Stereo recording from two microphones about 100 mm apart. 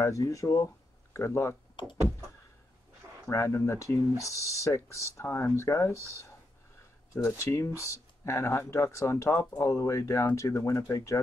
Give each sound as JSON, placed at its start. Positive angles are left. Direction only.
{"t": 0.0, "sound": "speech", "side_deg": 30}
{"t": 3.3, "sound": "speech", "side_deg": 30}
{"t": 7.2, "sound": "speech", "side_deg": 25}